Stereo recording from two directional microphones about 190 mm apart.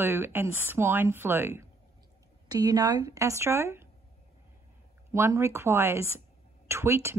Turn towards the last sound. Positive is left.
turn(degrees=-15)  # may be behind; listen again after turning